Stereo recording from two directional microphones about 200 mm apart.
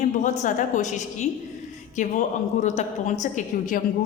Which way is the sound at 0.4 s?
40° left (ahead or behind).